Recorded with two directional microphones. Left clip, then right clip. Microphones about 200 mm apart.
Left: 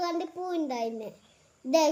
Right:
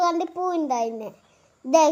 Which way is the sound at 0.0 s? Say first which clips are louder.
Right 9 dB; 15° right (ahead or behind).